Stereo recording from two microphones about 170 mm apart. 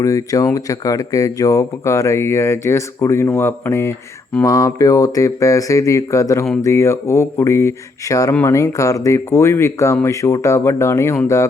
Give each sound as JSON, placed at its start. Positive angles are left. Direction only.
{"t": 0.0, "sound": "mantra", "side_deg": 20}
{"t": 4.4, "sound": "speech", "side_deg": 20}
{"t": 6.6, "sound": "mantra", "side_deg": 15}